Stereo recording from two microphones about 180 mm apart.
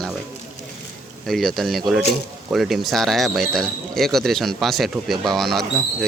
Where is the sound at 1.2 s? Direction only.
Centre (ahead or behind).